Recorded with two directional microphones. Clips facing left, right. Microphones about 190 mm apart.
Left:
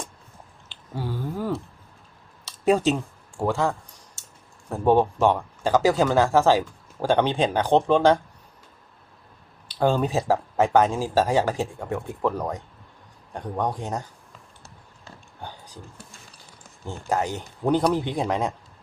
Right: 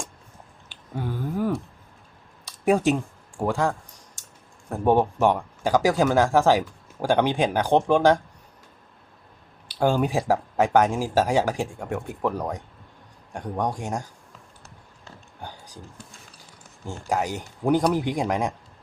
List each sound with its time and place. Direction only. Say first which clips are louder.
0.7 s a sound: even; 15° right (ahead or behind)
3.4 s speech: even; 15° right (ahead or behind)
4.7 s speech: left 1 dB; 15° right (ahead or behind)
9.6 s speech: even; 10° right (ahead or behind)
13.3 s speech: even; 15° right (ahead or behind)
15.4 s a sound: even; 15° right (ahead or behind)
17.1 s speech: even; 15° right (ahead or behind)